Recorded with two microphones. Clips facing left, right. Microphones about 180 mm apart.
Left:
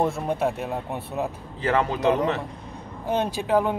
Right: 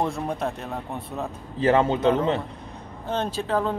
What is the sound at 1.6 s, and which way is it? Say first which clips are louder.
Speech: right 3 dB; 25° right (ahead or behind).